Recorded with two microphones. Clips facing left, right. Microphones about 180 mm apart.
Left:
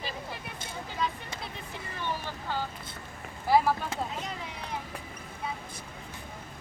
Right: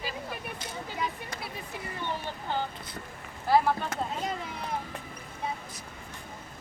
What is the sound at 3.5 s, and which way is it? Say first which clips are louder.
Boat: even; 10° left (ahead or behind).